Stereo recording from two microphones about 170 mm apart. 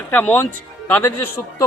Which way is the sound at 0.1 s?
10° left (ahead or behind).